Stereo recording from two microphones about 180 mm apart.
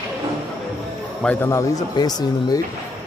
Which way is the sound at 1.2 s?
10° left (ahead or behind).